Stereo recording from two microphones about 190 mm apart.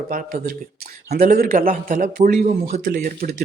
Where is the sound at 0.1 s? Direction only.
50° right (ahead or behind).